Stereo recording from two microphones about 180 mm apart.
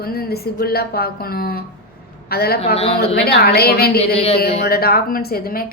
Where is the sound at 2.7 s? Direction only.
35° left (ahead or behind).